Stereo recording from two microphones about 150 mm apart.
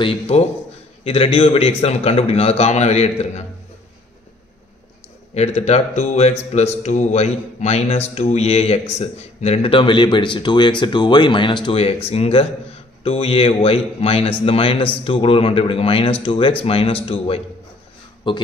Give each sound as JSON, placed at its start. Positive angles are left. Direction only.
{"t": 0.0, "sound": "speech", "side_deg": 40}
{"t": 5.3, "sound": "speech", "side_deg": 45}
{"t": 18.3, "sound": "speech", "side_deg": 30}